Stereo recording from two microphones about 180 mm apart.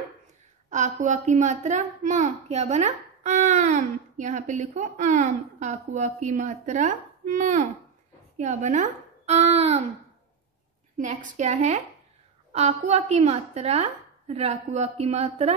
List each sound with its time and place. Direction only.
0.7 s a woman's voice: 40° right (ahead or behind)
11.0 s a woman's voice: 40° right (ahead or behind)